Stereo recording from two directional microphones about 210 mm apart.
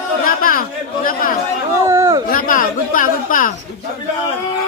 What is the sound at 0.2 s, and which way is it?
Chatter, 40° left (ahead or behind).